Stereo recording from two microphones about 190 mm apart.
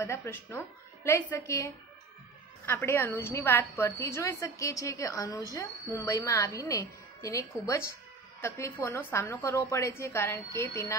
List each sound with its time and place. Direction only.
0.0 s a woman's voice: 15° left (ahead or behind)